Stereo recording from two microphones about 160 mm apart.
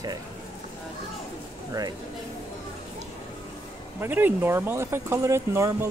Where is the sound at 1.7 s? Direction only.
25° right (ahead or behind).